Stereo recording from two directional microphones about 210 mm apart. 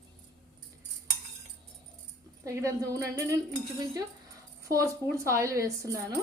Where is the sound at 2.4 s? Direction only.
15° right (ahead or behind).